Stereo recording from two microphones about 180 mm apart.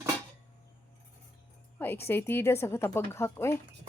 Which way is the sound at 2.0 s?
10° left (ahead or behind).